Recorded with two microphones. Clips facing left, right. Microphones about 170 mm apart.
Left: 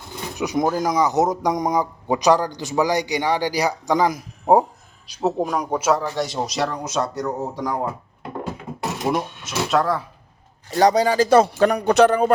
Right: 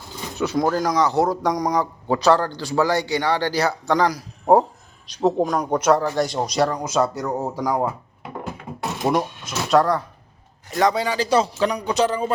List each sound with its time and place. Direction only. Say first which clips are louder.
0.3 s a man's voice: even; 15° left (ahead or behind); by 10.0 s centre (ahead or behind)
10.7 s a man's voice: left 4 dB; 35° left (ahead or behind); by 12.3 s 60° left (ahead or behind)